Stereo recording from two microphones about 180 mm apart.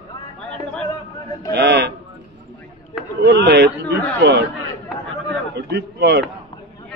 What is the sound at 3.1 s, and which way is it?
A man's voice, 70° right (ahead or behind).